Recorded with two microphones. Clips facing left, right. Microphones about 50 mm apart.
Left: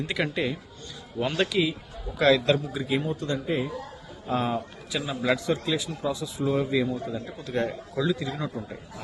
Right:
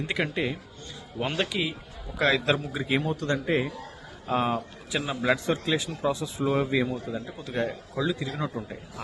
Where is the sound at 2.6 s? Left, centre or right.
Right.